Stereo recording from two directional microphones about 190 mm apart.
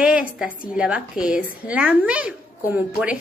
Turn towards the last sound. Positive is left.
turn(degrees=-10)  # may be behind; listen again after turning